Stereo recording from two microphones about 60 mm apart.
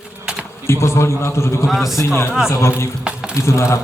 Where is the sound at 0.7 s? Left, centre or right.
Left.